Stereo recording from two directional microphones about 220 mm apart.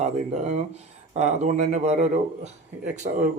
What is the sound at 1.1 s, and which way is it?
Speech, 30° right (ahead or behind).